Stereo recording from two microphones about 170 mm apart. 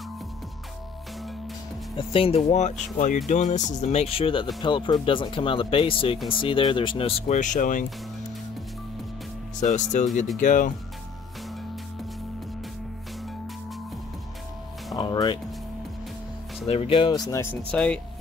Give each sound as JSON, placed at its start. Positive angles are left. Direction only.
{"t": 2.0, "sound": "speech", "side_deg": 35}
{"t": 9.6, "sound": "speech", "side_deg": 45}
{"t": 15.0, "sound": "speech", "side_deg": 25}
{"t": 16.6, "sound": "speech", "side_deg": 35}